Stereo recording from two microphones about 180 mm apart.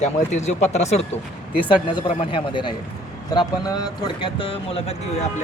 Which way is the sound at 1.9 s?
30° left (ahead or behind).